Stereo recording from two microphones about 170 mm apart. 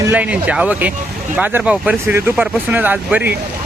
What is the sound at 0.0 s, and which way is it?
Speech, 10° right (ahead or behind).